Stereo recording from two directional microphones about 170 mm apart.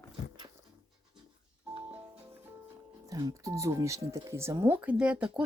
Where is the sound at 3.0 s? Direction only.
20° right (ahead or behind).